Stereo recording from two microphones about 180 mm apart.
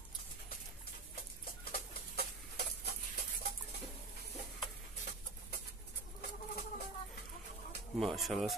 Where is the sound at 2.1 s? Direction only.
65° left (ahead or behind).